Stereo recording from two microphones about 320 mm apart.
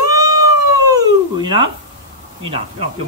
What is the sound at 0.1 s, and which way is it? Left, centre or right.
Cat, centre.